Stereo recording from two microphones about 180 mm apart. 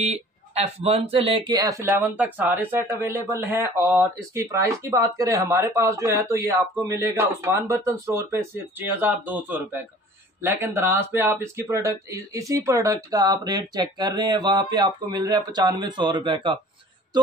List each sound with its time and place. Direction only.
0.0 s speech: 35° right (ahead or behind)